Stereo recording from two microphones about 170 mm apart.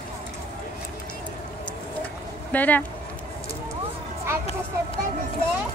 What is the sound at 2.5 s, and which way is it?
Speech, 10° left (ahead or behind).